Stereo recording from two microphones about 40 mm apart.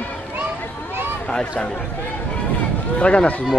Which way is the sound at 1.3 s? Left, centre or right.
Centre.